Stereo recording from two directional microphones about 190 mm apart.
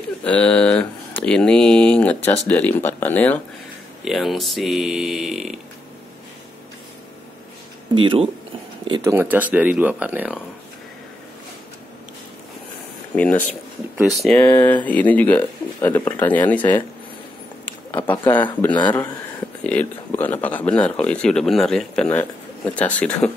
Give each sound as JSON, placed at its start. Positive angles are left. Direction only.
{"t": 0.2, "sound": "speech", "side_deg": 5}
{"t": 7.9, "sound": "speech", "side_deg": -25}
{"t": 9.1, "sound": "speech", "side_deg": -10}
{"t": 13.1, "sound": "speech", "side_deg": 5}
{"t": 18.7, "sound": "speech", "side_deg": 25}
{"t": 19.6, "sound": "speech", "side_deg": 10}